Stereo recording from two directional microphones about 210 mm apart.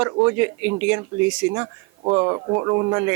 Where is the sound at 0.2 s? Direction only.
10° right (ahead or behind).